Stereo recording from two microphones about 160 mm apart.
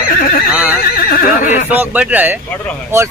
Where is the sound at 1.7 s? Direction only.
10° right (ahead or behind).